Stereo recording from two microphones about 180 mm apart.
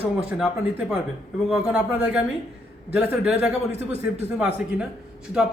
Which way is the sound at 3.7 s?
35° right (ahead or behind).